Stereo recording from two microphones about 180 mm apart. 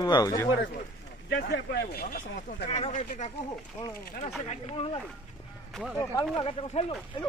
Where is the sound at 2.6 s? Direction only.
35° left (ahead or behind).